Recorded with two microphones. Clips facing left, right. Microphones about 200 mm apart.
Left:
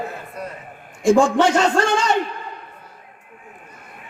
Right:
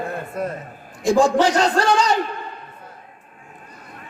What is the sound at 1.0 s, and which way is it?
A man's voice, 35° right (ahead or behind).